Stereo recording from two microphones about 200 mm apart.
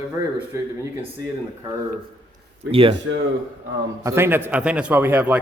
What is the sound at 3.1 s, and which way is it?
Speech, 70° right (ahead or behind).